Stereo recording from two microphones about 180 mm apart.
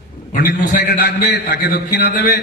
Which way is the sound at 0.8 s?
70° left (ahead or behind).